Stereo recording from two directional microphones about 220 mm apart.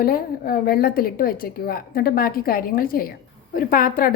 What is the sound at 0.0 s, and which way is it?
A woman's voice, 45° left (ahead or behind).